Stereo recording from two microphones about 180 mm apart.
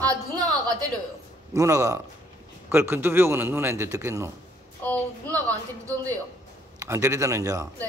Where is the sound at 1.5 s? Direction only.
15° right (ahead or behind).